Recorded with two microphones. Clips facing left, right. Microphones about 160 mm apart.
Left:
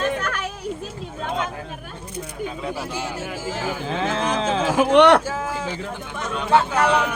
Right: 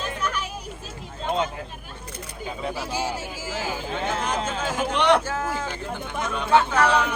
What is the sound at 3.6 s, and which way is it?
Speech, 55° left (ahead or behind).